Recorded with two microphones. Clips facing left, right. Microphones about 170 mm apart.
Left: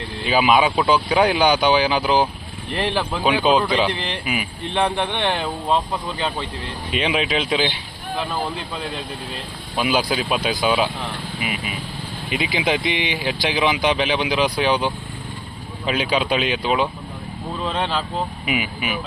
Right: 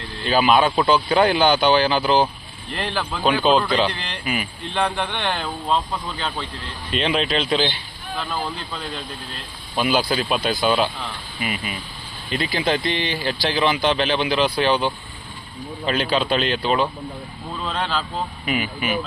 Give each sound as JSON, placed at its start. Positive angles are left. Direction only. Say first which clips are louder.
{"t": 0.3, "sound": "speech", "louder": "even", "side_deg": 5}
{"t": 2.7, "sound": "speech", "louder": "left 4 dB", "side_deg": 20}
{"t": 3.2, "sound": "speech", "louder": "even", "side_deg": 5}
{"t": 4.7, "sound": "speech", "louder": "left 2 dB", "side_deg": 20}
{"t": 9.7, "sound": "speech", "louder": "even", "side_deg": 5}
{"t": 12.3, "sound": "speech", "louder": "even", "side_deg": 15}
{"t": 13.1, "sound": "speech", "louder": "even", "side_deg": 5}
{"t": 17.7, "sound": "speech", "louder": "left 2 dB", "side_deg": 20}
{"t": 18.4, "sound": "speech", "louder": "even", "side_deg": 5}